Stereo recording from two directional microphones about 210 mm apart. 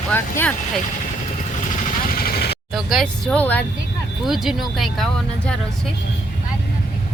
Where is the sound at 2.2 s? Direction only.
50° left (ahead or behind).